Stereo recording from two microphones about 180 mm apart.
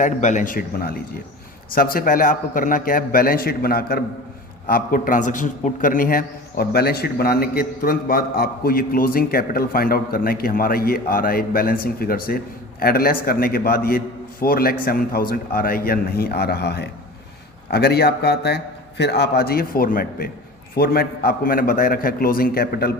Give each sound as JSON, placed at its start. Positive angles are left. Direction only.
{"t": 0.0, "sound": "a man's voice", "side_deg": 45}